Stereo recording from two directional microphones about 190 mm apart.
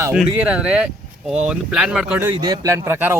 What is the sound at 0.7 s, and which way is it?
Speech, 5° right (ahead or behind).